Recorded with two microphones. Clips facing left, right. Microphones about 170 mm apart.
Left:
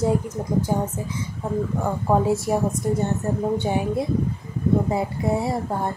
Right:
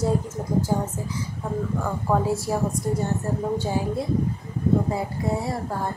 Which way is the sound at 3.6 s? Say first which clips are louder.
Left 2 dB; 20° left (ahead or behind).